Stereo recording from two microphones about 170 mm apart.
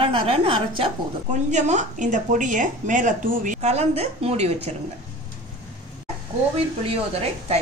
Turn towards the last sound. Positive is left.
turn(degrees=-35)  # may be behind; listen again after turning